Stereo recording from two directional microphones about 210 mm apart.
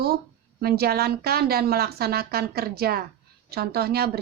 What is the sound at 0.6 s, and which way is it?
A woman's voice, 50° right (ahead or behind).